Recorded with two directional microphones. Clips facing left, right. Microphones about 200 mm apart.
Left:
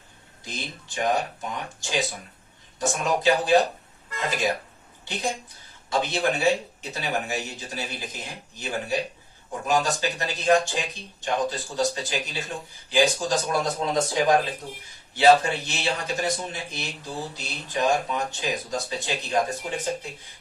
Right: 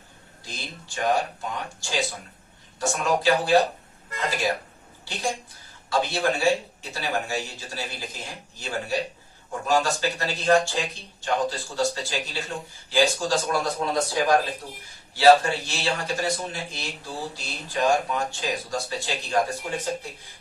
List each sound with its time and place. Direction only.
0.4 s speech: 20° left (ahead or behind)
5.9 s speech: 20° left (ahead or behind)